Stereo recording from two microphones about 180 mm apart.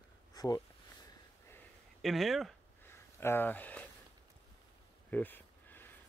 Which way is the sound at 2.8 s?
15° left (ahead or behind).